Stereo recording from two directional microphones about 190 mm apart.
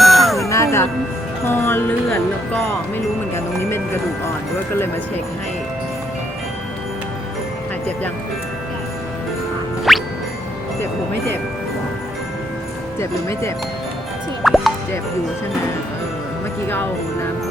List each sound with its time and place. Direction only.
0.0 s music: centre (ahead or behind)
0.4 s music: 15° left (ahead or behind)
9.9 s music: centre (ahead or behind)
13.0 s music: 15° left (ahead or behind)
14.4 s music: centre (ahead or behind)
16.6 s music: 10° left (ahead or behind)